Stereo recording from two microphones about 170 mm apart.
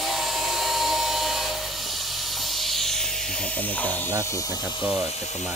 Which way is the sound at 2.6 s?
Centre (ahead or behind).